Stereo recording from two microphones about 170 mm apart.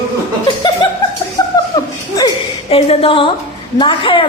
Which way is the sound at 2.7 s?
35° left (ahead or behind).